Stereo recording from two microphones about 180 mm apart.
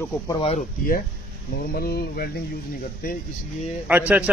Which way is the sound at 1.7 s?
55° left (ahead or behind).